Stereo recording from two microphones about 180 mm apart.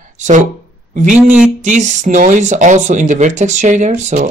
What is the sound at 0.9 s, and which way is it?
Speech, 45° right (ahead or behind).